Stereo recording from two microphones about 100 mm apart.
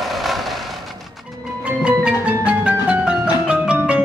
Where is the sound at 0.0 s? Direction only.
Centre (ahead or behind).